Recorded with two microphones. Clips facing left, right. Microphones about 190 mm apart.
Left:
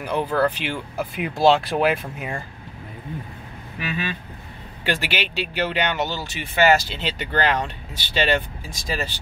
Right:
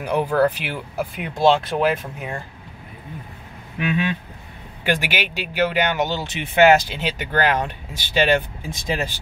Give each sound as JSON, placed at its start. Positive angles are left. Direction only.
{"t": 0.0, "sound": "speech", "side_deg": -10}
{"t": 1.1, "sound": "speech", "side_deg": 5}
{"t": 3.8, "sound": "speech", "side_deg": -20}